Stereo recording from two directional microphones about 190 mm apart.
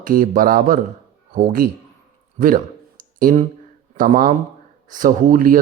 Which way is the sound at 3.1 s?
50° right (ahead or behind).